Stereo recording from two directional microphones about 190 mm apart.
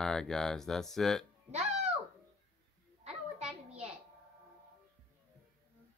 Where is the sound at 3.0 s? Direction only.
35° right (ahead or behind).